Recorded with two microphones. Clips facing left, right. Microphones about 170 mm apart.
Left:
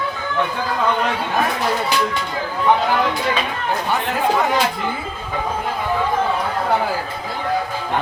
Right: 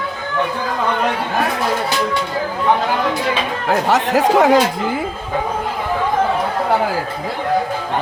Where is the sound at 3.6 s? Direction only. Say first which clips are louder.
Right 8 dB; 90° right.